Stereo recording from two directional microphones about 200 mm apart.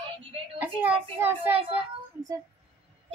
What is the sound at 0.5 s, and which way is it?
Speech, 10° right (ahead or behind).